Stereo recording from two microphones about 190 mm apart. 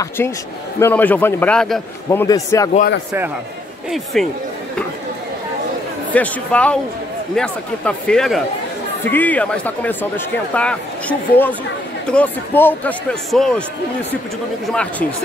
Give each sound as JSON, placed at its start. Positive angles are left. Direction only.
{"t": 0.2, "sound": "speech", "side_deg": 10}
{"t": 2.0, "sound": "speech", "side_deg": 15}
{"t": 3.9, "sound": "speech", "side_deg": 0}
{"t": 6.1, "sound": "speech", "side_deg": 5}
{"t": 14.7, "sound": "speech", "side_deg": 5}